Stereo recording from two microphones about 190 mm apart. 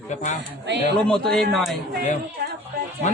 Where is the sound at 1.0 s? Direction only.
5° left (ahead or behind).